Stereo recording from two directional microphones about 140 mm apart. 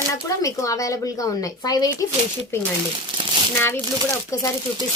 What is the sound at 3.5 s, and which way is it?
Speech, 15° left (ahead or behind).